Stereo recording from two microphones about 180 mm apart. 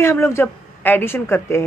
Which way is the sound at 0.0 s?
15° left (ahead or behind).